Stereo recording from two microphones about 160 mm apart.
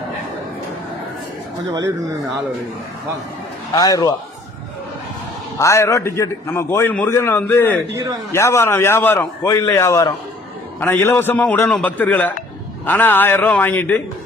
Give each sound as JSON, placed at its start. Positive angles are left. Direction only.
{"t": 3.7, "sound": "a man's voice", "side_deg": 25}
{"t": 5.5, "sound": "a man's voice", "side_deg": 20}